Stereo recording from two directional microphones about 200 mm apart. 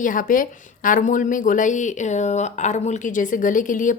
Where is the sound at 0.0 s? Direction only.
40° left (ahead or behind).